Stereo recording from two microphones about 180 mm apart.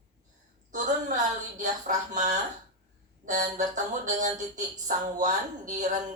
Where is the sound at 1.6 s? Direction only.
45° right (ahead or behind).